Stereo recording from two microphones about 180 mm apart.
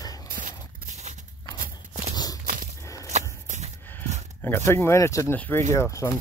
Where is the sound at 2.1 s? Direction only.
20° left (ahead or behind).